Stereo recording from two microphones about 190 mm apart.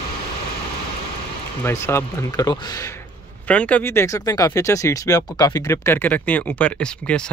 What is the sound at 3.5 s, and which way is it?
Speech, 5° left (ahead or behind).